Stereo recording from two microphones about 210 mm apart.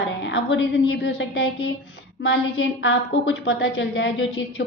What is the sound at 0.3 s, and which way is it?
A woman's voice, 60° left (ahead or behind).